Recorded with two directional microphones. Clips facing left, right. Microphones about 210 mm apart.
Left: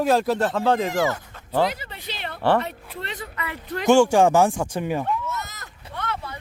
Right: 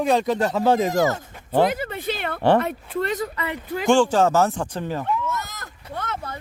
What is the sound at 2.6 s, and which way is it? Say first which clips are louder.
Speech: right 8 dB; 45° right (ahead or behind).